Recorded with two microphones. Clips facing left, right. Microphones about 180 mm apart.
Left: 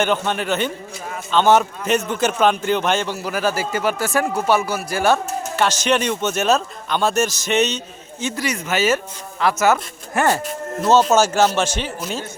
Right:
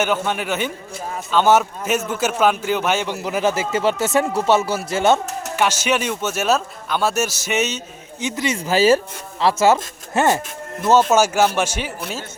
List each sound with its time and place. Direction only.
0.0 s a man's voice: 10° right (ahead or behind)
5.5 s a man's voice: 10° right (ahead or behind)
8.2 s a man's voice: 20° right (ahead or behind)
11.1 s a man's voice: 10° right (ahead or behind)